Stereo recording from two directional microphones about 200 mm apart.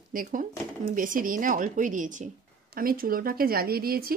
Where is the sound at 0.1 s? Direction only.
45° right (ahead or behind).